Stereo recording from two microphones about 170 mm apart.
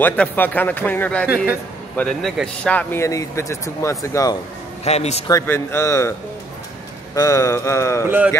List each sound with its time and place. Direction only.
0.0 s speech: 10° left (ahead or behind)
1.2 s a man's voice: 10° right (ahead or behind)
2.0 s speech: 5° left (ahead or behind); by 4.4 s 20° left (ahead or behind)
4.8 s a man's voice: 40° left (ahead or behind)
5.3 s speech: 15° left (ahead or behind)
7.2 s speech: 20° left (ahead or behind)